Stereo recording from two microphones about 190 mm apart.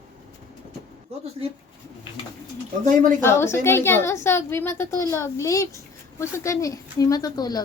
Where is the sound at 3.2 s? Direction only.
15° left (ahead or behind).